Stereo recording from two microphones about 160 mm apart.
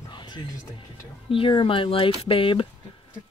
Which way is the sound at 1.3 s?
30° left (ahead or behind).